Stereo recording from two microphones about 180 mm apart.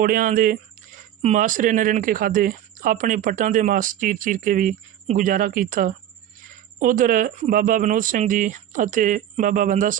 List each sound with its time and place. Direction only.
0.0 s speech: 50° right (ahead or behind)